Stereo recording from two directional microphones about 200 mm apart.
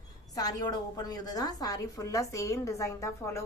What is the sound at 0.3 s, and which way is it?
A woman's voice, 20° left (ahead or behind).